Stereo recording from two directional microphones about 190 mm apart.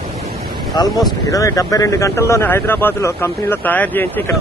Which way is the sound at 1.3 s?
15° left (ahead or behind).